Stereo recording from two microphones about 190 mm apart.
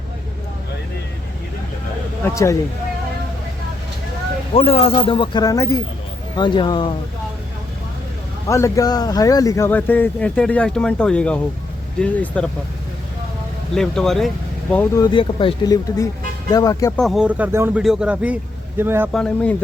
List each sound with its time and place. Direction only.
2.2 s speech: 15° left (ahead or behind)
4.5 s speech: 30° left (ahead or behind)
8.4 s speech: 15° left (ahead or behind)
13.7 s speech: 5° left (ahead or behind)
15.0 s speech: 25° left (ahead or behind)
17.0 s speech: centre (ahead or behind)
19.1 s speech: 5° left (ahead or behind)